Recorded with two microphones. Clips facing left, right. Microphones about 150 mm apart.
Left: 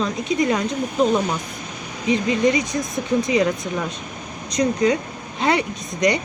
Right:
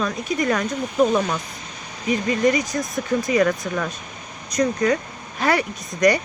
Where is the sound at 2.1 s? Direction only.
20° left (ahead or behind).